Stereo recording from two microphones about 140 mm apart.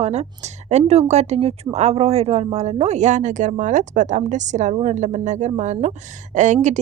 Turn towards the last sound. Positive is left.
turn(degrees=-60)  # may be behind; listen again after turning